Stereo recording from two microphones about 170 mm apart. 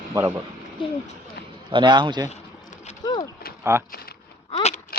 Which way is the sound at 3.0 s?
25° left (ahead or behind).